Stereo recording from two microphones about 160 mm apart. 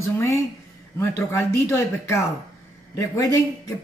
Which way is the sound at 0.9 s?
15° left (ahead or behind).